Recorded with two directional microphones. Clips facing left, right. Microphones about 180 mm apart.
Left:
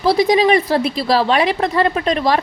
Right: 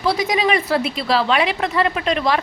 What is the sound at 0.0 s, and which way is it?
Speech, 35° left (ahead or behind).